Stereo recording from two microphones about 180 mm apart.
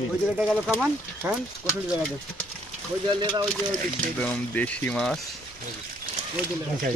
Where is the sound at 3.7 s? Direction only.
10° left (ahead or behind).